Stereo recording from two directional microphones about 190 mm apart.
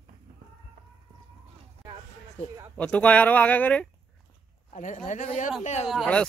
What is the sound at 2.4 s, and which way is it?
Speech, 35° left (ahead or behind).